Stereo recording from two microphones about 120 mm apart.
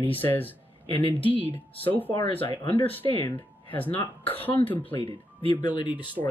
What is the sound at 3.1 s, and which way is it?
Speech, 15° left (ahead or behind).